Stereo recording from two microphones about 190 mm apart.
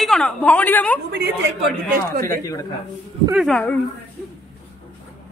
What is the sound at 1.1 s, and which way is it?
Speech, 60° right (ahead or behind).